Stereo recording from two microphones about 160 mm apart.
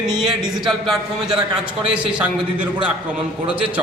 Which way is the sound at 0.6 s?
Centre (ahead or behind).